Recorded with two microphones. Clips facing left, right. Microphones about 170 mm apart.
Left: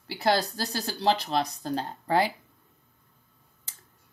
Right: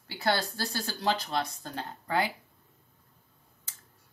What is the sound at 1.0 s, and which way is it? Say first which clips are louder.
Speech: left 5 dB; 35° left (ahead or behind).